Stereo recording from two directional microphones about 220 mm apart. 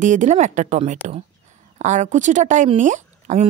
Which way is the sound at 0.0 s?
35° right (ahead or behind).